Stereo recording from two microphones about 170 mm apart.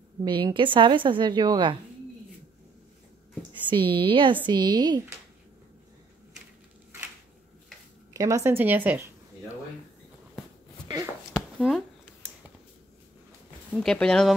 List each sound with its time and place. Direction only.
0.2 s a woman's voice: 25° right (ahead or behind)
3.7 s a woman's voice: 30° right (ahead or behind)
8.1 s speech: 20° right (ahead or behind)
11.3 s a sound: centre (ahead or behind)
13.7 s speech: 5° left (ahead or behind)